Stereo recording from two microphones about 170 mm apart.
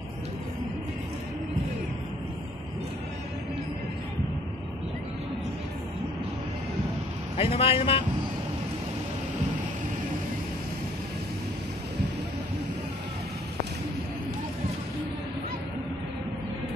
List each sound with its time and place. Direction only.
7.3 s a man's voice: 35° left (ahead or behind)